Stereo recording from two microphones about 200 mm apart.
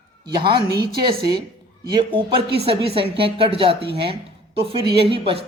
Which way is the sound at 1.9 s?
25° right (ahead or behind).